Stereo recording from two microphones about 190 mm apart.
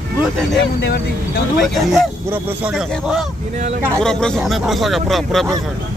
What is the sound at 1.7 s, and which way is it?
Speech, centre (ahead or behind).